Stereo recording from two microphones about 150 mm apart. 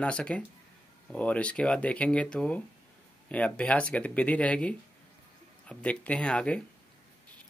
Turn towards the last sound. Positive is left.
turn(degrees=5)  # may be behind; listen again after turning